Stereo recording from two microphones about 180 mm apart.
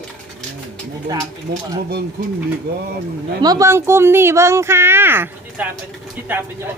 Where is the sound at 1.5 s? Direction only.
35° right (ahead or behind).